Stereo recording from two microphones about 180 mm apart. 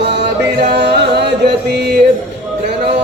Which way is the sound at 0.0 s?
70° right (ahead or behind).